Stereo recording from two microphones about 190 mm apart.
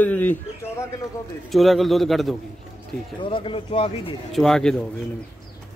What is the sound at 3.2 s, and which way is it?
Speech, 25° left (ahead or behind).